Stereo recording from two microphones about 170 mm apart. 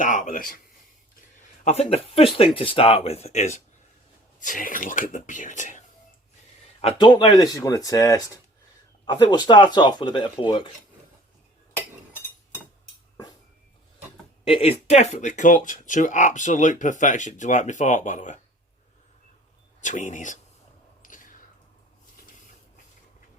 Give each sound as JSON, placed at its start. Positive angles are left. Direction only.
{"t": 0.0, "sound": "speech", "side_deg": 50}
{"t": 1.6, "sound": "speech", "side_deg": 40}
{"t": 4.4, "sound": "speech", "side_deg": 50}
{"t": 6.8, "sound": "speech", "side_deg": 25}
{"t": 14.4, "sound": "speech", "side_deg": 35}
{"t": 19.8, "sound": "speech", "side_deg": 45}
{"t": 21.0, "sound": "a sound", "side_deg": 50}